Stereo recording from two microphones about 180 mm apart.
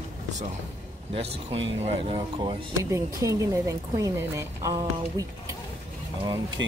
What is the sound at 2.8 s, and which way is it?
Speech, 15° right (ahead or behind).